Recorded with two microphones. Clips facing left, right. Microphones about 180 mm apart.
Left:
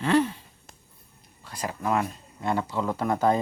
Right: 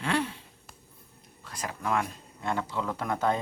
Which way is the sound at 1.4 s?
Centre (ahead or behind).